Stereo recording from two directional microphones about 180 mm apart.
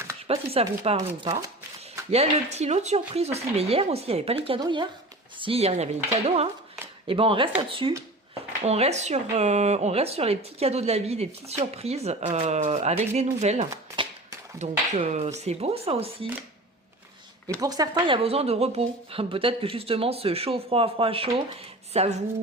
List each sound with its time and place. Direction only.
0.3 s speech: 35° right (ahead or behind)
17.5 s speech: 20° right (ahead or behind); by 22.2 s 35° right (ahead or behind)